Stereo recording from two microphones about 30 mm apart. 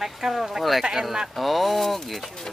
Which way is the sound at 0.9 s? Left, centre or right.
Centre.